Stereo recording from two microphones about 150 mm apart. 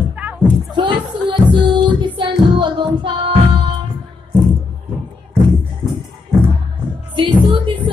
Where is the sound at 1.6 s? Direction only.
30° right (ahead or behind).